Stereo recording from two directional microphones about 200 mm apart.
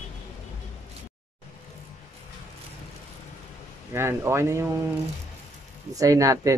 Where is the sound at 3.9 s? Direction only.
15° right (ahead or behind).